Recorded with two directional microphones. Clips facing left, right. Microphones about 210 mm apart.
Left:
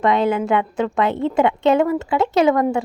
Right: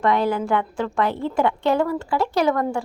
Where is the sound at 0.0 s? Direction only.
20° left (ahead or behind).